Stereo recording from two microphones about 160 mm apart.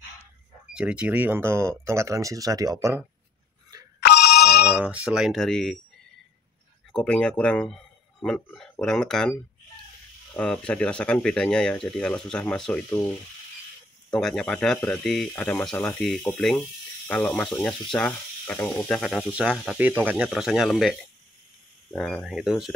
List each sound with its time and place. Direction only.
0.7 s speech: 5° right (ahead or behind)
4.0 s music: 90° left
4.6 s speech: 5° right (ahead or behind)
6.9 s speech: 5° left (ahead or behind)
10.3 s speech: 5° left (ahead or behind)
14.1 s speech: 5° left (ahead or behind)
18.9 s speech: centre (ahead or behind)
21.9 s speech: 5° left (ahead or behind)